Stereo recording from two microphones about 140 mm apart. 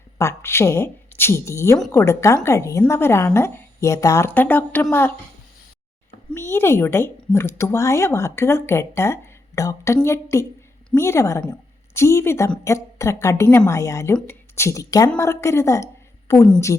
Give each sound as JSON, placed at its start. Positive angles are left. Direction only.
{"t": 0.2, "sound": "speech", "side_deg": 20}
{"t": 6.3, "sound": "a woman's voice", "side_deg": 15}